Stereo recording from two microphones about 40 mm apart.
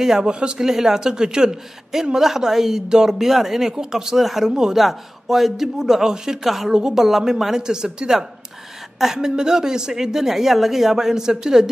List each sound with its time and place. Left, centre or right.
0.0 s speech: centre
4.7 s speech: centre